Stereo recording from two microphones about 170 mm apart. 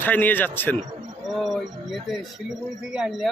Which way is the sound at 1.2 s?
Centre (ahead or behind).